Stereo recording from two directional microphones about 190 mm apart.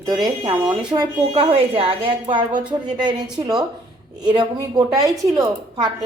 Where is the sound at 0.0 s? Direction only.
20° right (ahead or behind).